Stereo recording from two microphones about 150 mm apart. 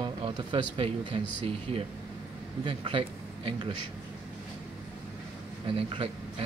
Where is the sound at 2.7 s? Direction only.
35° right (ahead or behind).